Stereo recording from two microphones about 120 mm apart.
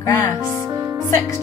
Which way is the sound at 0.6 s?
25° right (ahead or behind).